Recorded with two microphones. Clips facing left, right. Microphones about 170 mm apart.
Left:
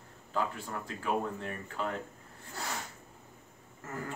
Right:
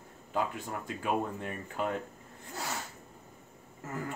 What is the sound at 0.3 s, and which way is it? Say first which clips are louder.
Speech: right 1 dB; 15° right (ahead or behind).